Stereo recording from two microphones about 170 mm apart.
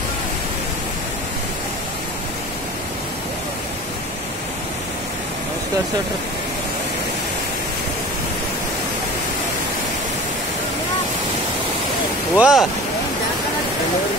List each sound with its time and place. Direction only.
12.4 s speech: 5° right (ahead or behind)